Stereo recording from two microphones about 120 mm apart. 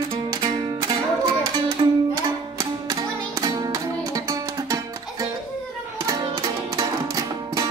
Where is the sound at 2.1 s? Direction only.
35° right (ahead or behind).